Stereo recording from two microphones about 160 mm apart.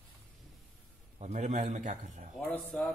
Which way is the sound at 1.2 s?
50° right (ahead or behind).